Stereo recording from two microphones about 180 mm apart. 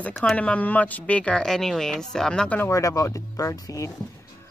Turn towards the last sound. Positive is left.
turn(degrees=15)  # may be behind; listen again after turning